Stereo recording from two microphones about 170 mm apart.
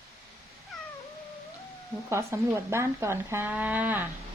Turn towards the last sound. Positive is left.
turn(degrees=-10)  # may be behind; listen again after turning